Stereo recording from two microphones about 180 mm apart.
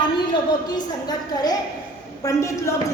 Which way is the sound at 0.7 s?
20° left (ahead or behind).